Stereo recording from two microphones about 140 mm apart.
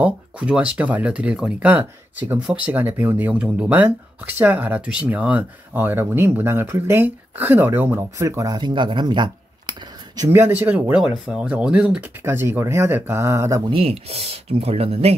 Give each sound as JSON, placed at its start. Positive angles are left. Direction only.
{"t": 0.0, "sound": "speech", "side_deg": -10}
{"t": 10.3, "sound": "speech", "side_deg": -15}
{"t": 12.2, "sound": "speech", "side_deg": -20}
{"t": 13.7, "sound": "speech", "side_deg": -40}